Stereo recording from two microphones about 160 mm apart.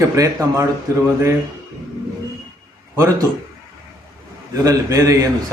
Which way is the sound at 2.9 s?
20° right (ahead or behind).